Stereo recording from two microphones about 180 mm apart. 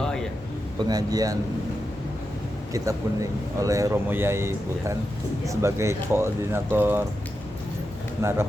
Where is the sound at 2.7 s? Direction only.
15° right (ahead or behind).